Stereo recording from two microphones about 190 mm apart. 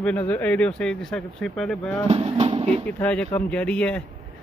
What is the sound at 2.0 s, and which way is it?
Speech, 30° right (ahead or behind).